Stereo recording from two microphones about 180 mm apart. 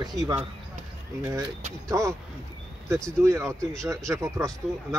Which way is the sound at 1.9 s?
15° right (ahead or behind).